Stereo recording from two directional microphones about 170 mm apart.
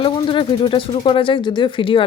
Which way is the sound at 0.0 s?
30° left (ahead or behind).